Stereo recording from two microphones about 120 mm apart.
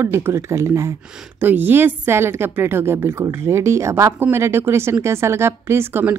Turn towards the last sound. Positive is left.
turn(degrees=-20)  # may be behind; listen again after turning